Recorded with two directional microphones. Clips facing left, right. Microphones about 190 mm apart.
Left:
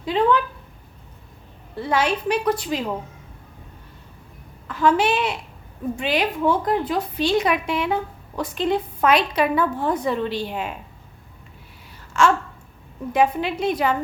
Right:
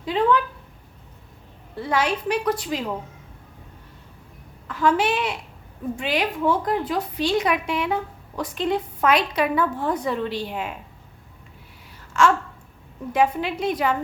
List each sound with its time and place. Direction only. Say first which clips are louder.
0.0 s a sound: left 1 dB; 25° left (ahead or behind)
1.8 s a woman's voice: left 2 dB; 25° left (ahead or behind)
4.7 s a woman's voice: left 2 dB; 25° left (ahead or behind)
12.1 s a woman's voice: left 1 dB; 25° left (ahead or behind)